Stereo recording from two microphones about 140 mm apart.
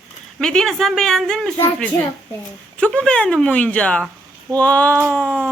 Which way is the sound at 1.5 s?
15° left (ahead or behind).